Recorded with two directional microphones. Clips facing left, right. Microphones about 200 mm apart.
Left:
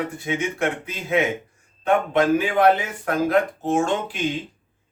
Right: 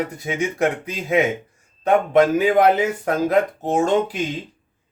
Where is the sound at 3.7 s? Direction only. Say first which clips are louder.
Right 2 dB; 35° right (ahead or behind).